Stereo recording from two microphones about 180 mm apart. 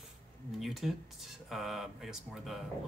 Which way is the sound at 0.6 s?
Centre (ahead or behind).